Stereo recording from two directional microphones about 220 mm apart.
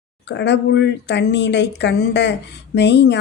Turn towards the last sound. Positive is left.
turn(degrees=50)  # may be behind; listen again after turning